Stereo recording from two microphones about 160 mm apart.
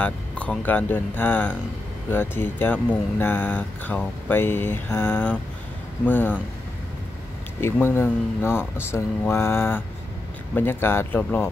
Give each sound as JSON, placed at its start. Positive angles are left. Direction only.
{"t": 0.0, "sound": "speech", "side_deg": 10}
{"t": 7.6, "sound": "speech", "side_deg": 15}